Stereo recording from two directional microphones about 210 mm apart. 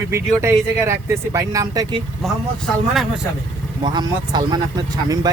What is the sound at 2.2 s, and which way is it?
Speech, centre (ahead or behind).